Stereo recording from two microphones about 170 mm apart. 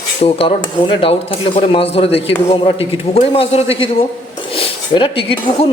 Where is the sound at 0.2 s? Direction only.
30° left (ahead or behind).